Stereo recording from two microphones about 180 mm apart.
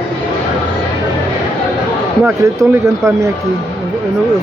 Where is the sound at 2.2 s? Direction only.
15° right (ahead or behind).